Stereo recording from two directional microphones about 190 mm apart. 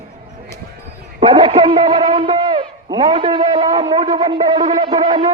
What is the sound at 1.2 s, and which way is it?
A man's voice, 25° right (ahead or behind).